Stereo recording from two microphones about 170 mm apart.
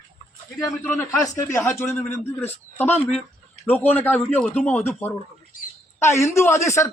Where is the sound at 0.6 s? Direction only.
15° left (ahead or behind).